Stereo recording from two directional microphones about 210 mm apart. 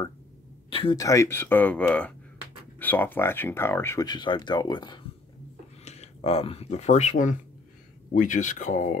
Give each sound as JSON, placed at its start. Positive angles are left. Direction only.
{"t": 0.7, "sound": "speech", "side_deg": 25}